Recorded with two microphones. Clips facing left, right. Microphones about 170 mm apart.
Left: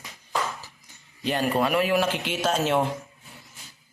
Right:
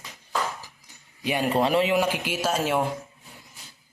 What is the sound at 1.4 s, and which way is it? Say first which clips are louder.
Speech: right 2 dB; 25° right (ahead or behind).